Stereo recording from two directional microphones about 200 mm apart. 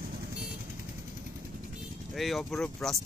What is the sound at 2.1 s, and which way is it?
Speech, centre (ahead or behind).